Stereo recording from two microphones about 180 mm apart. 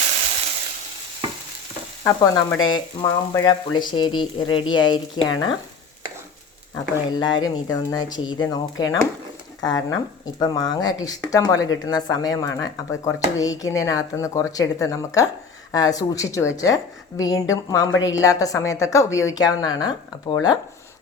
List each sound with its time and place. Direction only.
2.0 s frying: 15° left (ahead or behind)
7.1 s frying: 25° left (ahead or behind)
9.6 s speech: 20° left (ahead or behind)
10.4 s frying: 20° left (ahead or behind)
12.5 s speech: 15° left (ahead or behind)
15.7 s frying: 20° left (ahead or behind)
18.1 s speech: 20° left (ahead or behind)